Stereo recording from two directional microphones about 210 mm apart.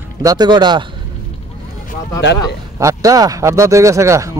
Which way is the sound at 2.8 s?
15° right (ahead or behind).